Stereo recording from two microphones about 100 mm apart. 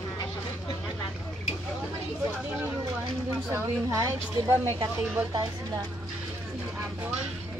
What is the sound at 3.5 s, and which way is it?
Speech, 30° right (ahead or behind).